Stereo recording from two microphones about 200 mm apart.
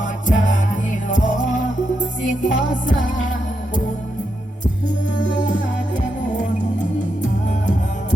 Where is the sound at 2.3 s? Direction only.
40° left (ahead or behind).